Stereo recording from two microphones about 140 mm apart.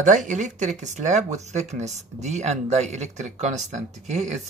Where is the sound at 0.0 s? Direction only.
65° right (ahead or behind).